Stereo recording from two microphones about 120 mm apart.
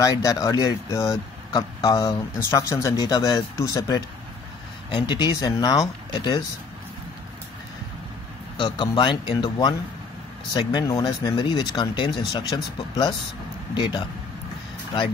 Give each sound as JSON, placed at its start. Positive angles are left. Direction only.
{"t": 0.0, "sound": "speech", "side_deg": 30}
{"t": 4.9, "sound": "speech", "side_deg": 40}
{"t": 8.5, "sound": "speech", "side_deg": 40}